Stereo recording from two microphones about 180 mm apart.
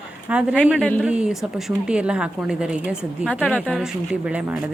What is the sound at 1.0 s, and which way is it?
A woman's voice, 5° right (ahead or behind).